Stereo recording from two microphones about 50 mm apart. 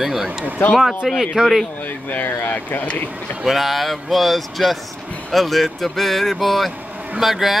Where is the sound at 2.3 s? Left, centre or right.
Left.